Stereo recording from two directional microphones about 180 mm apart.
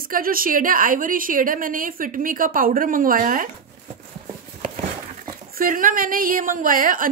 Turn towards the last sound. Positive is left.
turn(degrees=-50)  # may be behind; listen again after turning